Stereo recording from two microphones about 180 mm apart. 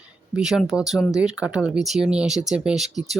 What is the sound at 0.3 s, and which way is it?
Speech, 5° right (ahead or behind).